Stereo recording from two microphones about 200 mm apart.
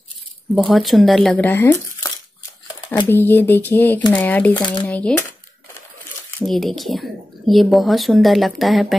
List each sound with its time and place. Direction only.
0.6 s speech: centre (ahead or behind)
3.1 s speech: 10° left (ahead or behind)
4.6 s speech: 20° left (ahead or behind)
4.8 s speech: 10° left (ahead or behind)
6.4 s speech: centre (ahead or behind)